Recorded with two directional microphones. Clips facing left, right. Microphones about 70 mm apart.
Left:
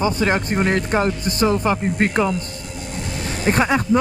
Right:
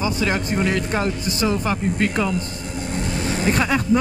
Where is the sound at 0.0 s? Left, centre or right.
Left.